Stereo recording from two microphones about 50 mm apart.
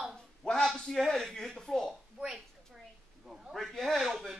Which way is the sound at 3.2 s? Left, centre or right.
Centre.